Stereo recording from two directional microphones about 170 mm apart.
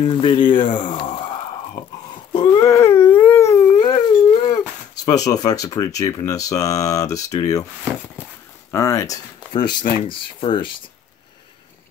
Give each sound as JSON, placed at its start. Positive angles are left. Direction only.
{"t": 0.0, "sound": "speech", "side_deg": 30}
{"t": 0.9, "sound": "a sound", "side_deg": 30}
{"t": 2.3, "sound": "speech", "side_deg": 20}
{"t": 3.1, "sound": "dog", "side_deg": 10}
{"t": 3.9, "sound": "dog", "side_deg": 30}
{"t": 5.0, "sound": "speech", "side_deg": 20}
{"t": 8.7, "sound": "speech", "side_deg": 15}